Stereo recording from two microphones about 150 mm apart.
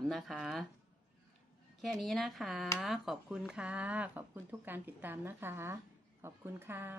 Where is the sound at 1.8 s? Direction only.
Centre (ahead or behind).